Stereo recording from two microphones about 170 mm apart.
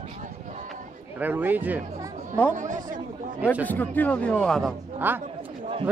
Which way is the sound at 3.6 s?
10° left (ahead or behind).